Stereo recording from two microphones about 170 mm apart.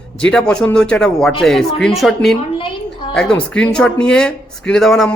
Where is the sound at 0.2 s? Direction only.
5° left (ahead or behind).